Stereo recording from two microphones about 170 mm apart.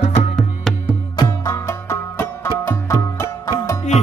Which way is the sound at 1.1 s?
15° left (ahead or behind).